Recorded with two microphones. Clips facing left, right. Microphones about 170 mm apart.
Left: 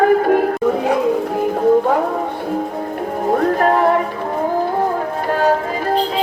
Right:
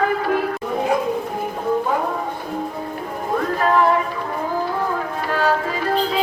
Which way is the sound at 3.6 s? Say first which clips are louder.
Right 1 dB; 55° left (ahead or behind).